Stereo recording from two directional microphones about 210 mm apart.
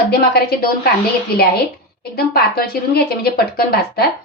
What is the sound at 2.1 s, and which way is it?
Speech, 45° left (ahead or behind).